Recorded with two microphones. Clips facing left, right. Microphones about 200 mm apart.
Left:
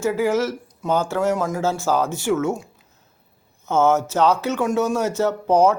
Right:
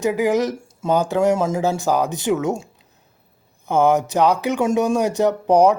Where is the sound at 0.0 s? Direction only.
15° right (ahead or behind).